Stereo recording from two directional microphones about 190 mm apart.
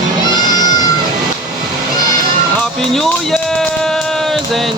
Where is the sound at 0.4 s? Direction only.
20° left (ahead or behind).